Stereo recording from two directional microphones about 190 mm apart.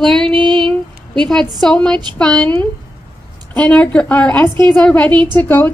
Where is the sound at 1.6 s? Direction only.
5° left (ahead or behind).